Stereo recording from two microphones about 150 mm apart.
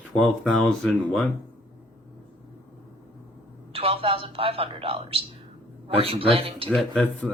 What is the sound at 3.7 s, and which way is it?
A man's voice, 40° right (ahead or behind).